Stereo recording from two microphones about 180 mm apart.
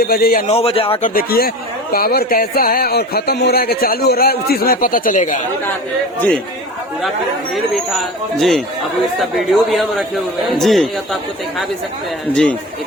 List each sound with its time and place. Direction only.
0.0 s a man's voice: 60° left (ahead or behind)
0.4 s speech: 35° left (ahead or behind)
1.0 s a man's voice: 55° left (ahead or behind)
6.1 s a man's voice: 10° left (ahead or behind)
7.5 s speech: centre (ahead or behind)
12.3 s speech: 5° left (ahead or behind)